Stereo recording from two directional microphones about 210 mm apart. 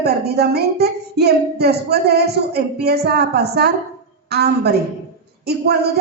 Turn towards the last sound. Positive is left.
turn(degrees=-50)  # may be behind; listen again after turning